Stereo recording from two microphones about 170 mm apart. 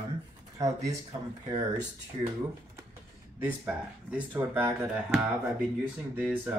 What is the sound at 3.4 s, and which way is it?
Speech, 10° right (ahead or behind).